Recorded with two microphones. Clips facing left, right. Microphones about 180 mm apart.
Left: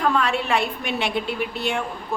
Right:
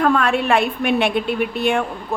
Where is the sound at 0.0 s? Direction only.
55° right (ahead or behind).